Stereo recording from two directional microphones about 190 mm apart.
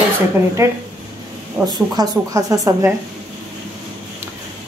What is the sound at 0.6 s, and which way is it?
A woman's voice, 15° right (ahead or behind).